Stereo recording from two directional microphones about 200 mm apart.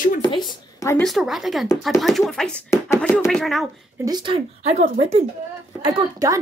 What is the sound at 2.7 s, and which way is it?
Speech, 15° left (ahead or behind).